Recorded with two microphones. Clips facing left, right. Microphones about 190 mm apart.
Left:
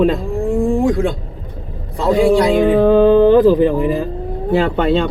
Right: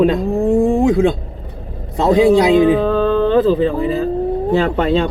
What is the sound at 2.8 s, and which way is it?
Speech, 15° left (ahead or behind).